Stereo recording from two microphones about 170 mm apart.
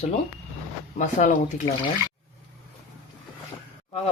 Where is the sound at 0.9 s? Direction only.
45° left (ahead or behind).